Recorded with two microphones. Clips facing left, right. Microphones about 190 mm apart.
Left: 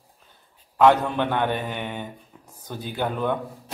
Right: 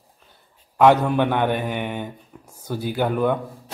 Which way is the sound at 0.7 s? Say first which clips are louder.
Right 2 dB; 15° right (ahead or behind).